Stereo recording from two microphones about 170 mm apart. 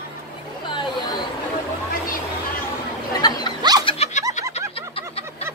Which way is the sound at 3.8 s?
40° left (ahead or behind).